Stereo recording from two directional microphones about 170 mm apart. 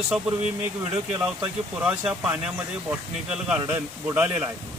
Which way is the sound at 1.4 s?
5° right (ahead or behind).